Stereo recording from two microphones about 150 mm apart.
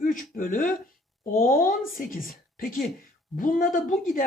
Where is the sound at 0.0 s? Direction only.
65° left (ahead or behind).